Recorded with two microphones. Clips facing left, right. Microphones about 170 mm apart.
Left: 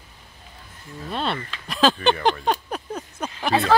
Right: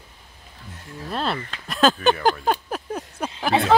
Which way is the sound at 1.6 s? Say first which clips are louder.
Right 1 dB; centre (ahead or behind).